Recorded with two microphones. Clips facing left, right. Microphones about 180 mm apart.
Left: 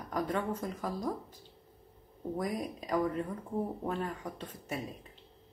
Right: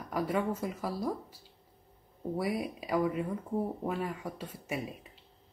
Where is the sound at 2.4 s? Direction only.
10° right (ahead or behind).